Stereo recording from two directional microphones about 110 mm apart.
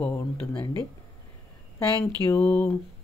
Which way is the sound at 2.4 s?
10° left (ahead or behind).